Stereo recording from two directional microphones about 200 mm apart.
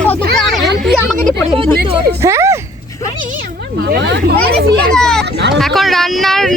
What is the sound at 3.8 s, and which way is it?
Speech, 60° right (ahead or behind).